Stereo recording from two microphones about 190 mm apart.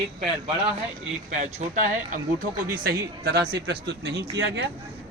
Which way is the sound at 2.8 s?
55° right (ahead or behind).